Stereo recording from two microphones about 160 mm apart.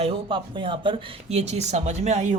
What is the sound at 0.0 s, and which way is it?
Speech, 30° right (ahead or behind).